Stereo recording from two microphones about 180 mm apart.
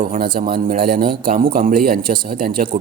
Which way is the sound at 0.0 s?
55° right (ahead or behind).